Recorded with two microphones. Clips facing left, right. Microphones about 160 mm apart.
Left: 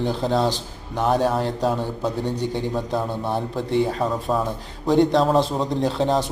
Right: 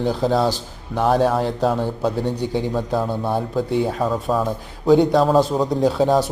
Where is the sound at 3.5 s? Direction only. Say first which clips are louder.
Right 1 dB; 5° right (ahead or behind).